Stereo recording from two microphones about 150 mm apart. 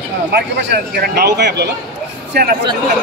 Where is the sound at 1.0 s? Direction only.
90° right.